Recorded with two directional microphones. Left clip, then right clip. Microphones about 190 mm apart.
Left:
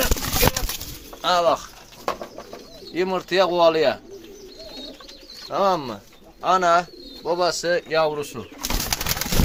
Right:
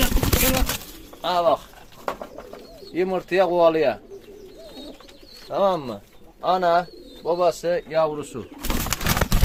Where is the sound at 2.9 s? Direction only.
15° right (ahead or behind).